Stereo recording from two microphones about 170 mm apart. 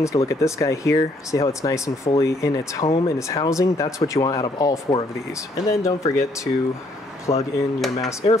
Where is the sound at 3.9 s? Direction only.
20° left (ahead or behind).